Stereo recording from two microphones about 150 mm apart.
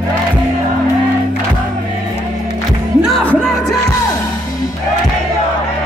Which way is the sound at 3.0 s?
5° left (ahead or behind).